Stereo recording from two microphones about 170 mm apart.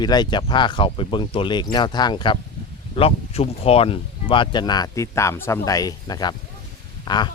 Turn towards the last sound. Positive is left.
turn(degrees=25)  # may be behind; listen again after turning